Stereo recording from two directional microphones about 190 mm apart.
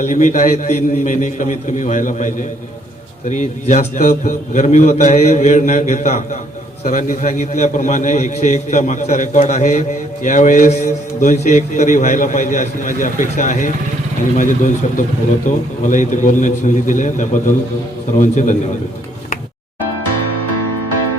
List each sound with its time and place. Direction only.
0.0 s a man's voice: 40° left (ahead or behind)